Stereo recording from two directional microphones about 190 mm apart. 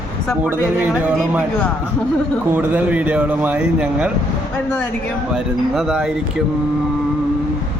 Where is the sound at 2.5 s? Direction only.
10° right (ahead or behind).